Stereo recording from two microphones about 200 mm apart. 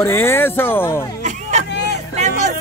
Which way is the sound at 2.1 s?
35° right (ahead or behind).